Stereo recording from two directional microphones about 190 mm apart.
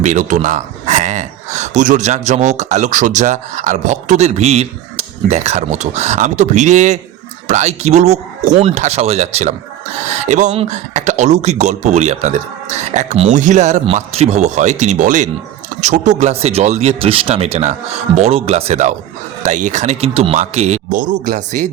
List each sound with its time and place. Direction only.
0.0 s speech: 40° right (ahead or behind)